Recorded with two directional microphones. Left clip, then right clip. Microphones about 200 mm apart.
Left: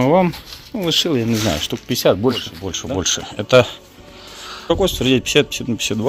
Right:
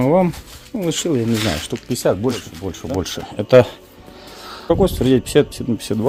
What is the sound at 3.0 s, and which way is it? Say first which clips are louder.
Speech: left 5 dB; 15° right (ahead or behind).